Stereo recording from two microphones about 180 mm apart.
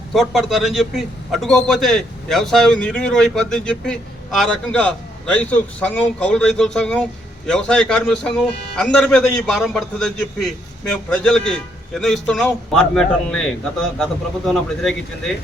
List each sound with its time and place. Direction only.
0.1 s a man's voice: centre (ahead or behind)